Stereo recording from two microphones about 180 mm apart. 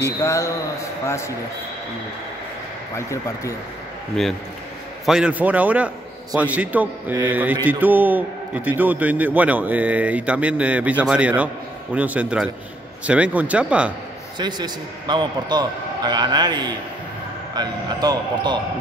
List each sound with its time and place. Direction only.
0.2 s speech: 15° left (ahead or behind)
5.0 s a man's voice: 5° right (ahead or behind)
14.4 s a man's voice: 25° right (ahead or behind)